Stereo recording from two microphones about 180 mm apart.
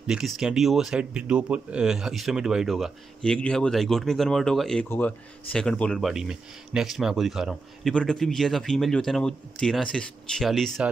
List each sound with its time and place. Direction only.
0.0 s speech: 5° right (ahead or behind)